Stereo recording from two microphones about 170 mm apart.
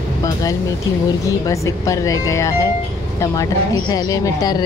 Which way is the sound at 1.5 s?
20° left (ahead or behind).